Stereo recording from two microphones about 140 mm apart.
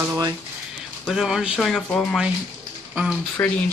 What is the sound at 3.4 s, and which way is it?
Speech, 15° left (ahead or behind).